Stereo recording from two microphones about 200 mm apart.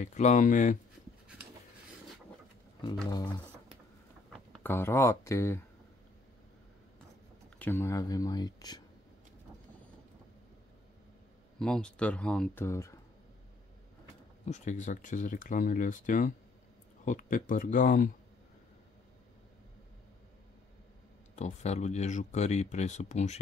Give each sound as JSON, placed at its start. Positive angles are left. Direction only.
{"t": 0.0, "sound": "speech", "side_deg": 35}
{"t": 3.1, "sound": "speech", "side_deg": 20}
{"t": 4.3, "sound": "speech", "side_deg": 5}
{"t": 7.5, "sound": "speech", "side_deg": 10}
{"t": 11.6, "sound": "speech", "side_deg": 5}
{"t": 14.4, "sound": "speech", "side_deg": 35}
{"t": 21.4, "sound": "speech", "side_deg": 35}